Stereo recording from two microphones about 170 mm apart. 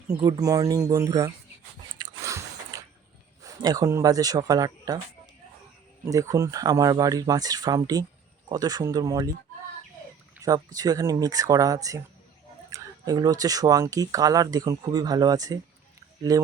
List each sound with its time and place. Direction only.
0.2 s speech: 20° right (ahead or behind)
2.0 s biting: 20° right (ahead or behind)
3.4 s speech: 20° right (ahead or behind)
6.1 s speech: 20° right (ahead or behind)
10.4 s speech: 20° right (ahead or behind)